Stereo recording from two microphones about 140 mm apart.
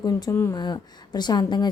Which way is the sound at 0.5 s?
30° left (ahead or behind).